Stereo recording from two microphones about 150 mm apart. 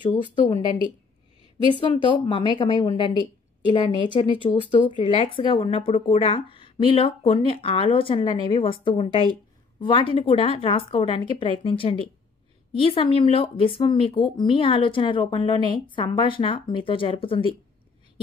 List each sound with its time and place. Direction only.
1.7 s speech: 35° left (ahead or behind)